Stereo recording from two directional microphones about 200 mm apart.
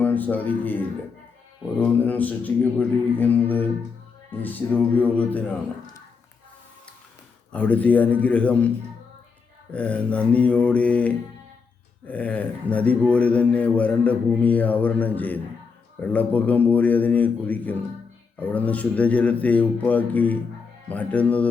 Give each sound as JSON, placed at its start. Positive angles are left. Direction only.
{"t": 0.0, "sound": "a sound", "side_deg": 10}
{"t": 1.8, "sound": "mantra", "side_deg": 10}
{"t": 7.5, "sound": "mantra", "side_deg": 5}
{"t": 9.7, "sound": "mantra", "side_deg": 5}